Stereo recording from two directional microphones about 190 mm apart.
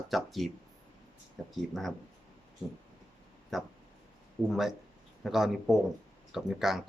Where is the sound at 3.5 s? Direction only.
Centre (ahead or behind).